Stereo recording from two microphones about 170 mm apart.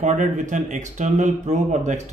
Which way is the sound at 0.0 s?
45° right (ahead or behind).